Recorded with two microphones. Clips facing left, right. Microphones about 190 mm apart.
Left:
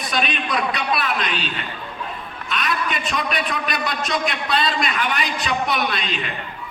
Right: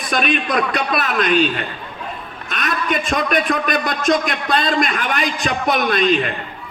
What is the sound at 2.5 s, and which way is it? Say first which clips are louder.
A man's voice: right 3 dB; 45° right (ahead or behind).